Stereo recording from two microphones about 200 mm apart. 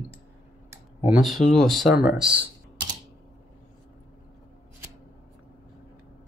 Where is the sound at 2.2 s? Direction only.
25° right (ahead or behind).